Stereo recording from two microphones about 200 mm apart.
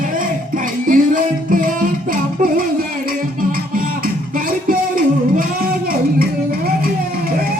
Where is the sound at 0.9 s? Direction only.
45° right (ahead or behind).